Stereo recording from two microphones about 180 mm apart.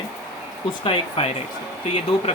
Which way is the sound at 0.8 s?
30° left (ahead or behind).